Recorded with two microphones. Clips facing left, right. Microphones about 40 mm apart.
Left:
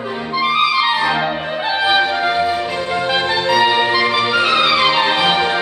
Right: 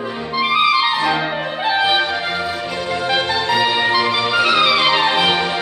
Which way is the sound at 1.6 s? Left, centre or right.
Centre.